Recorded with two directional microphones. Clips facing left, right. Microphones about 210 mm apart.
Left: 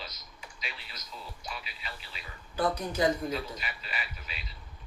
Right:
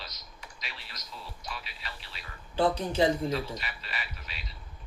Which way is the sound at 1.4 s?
Centre (ahead or behind).